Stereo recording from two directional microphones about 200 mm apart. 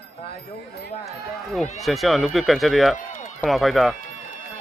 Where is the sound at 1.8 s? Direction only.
Centre (ahead or behind).